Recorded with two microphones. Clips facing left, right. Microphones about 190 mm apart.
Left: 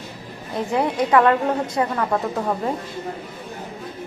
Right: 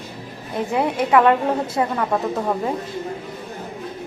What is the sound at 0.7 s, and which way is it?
Speech, 15° right (ahead or behind).